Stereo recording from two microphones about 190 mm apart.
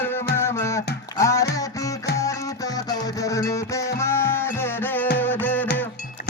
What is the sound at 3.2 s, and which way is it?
Music, 15° left (ahead or behind).